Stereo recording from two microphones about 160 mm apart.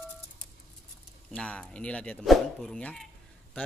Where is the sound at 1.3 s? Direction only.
5° left (ahead or behind).